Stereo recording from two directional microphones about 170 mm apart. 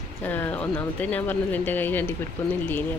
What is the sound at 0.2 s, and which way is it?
Speech, 10° left (ahead or behind).